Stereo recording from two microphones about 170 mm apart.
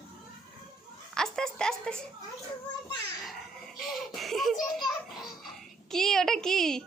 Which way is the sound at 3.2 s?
Centre (ahead or behind).